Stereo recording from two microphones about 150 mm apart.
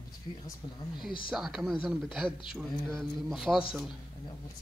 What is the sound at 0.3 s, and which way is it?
Speech, 35° left (ahead or behind).